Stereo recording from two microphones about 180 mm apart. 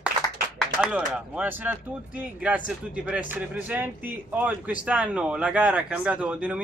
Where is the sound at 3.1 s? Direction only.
10° right (ahead or behind).